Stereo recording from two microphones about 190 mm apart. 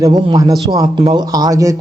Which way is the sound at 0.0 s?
20° right (ahead or behind).